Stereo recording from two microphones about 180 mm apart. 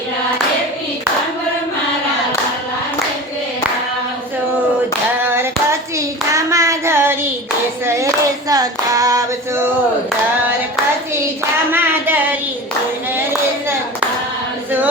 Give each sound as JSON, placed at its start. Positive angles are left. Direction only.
{"t": 5.2, "sound": "hands", "side_deg": -15}
{"t": 6.0, "sound": "clapping", "side_deg": -15}
{"t": 11.7, "sound": "a sound", "side_deg": -10}